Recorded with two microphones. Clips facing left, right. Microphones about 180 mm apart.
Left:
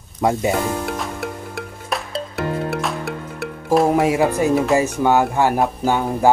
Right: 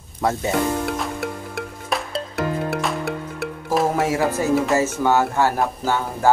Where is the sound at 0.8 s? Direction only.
Centre (ahead or behind).